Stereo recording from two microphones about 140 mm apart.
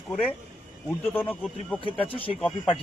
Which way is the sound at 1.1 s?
15° left (ahead or behind).